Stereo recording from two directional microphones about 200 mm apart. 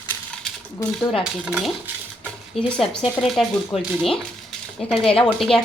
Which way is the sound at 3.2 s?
Centre (ahead or behind).